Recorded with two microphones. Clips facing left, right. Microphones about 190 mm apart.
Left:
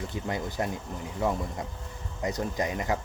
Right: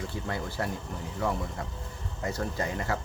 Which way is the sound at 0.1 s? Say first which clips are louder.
Left 2 dB; 20° left (ahead or behind).